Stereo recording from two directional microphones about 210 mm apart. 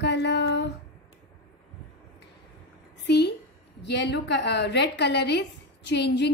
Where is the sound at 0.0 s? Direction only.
55° left (ahead or behind).